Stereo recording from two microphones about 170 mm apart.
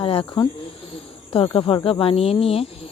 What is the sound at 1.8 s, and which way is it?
Speech, 35° left (ahead or behind).